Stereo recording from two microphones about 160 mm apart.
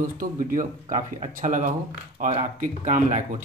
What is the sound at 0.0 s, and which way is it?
Speech, 60° right (ahead or behind).